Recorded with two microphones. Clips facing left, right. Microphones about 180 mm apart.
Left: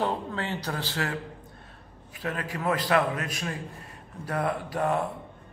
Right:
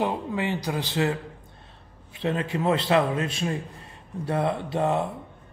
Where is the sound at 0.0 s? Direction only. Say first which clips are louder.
Right 3 dB; 15° right (ahead or behind).